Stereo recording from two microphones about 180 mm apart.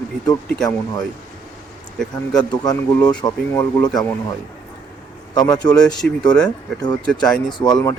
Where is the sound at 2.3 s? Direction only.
20° left (ahead or behind).